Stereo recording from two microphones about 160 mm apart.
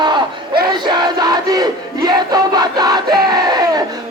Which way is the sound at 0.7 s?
25° right (ahead or behind).